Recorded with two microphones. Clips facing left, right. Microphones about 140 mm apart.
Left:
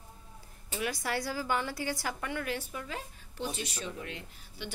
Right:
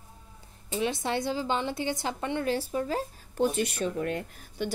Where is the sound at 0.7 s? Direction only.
25° right (ahead or behind).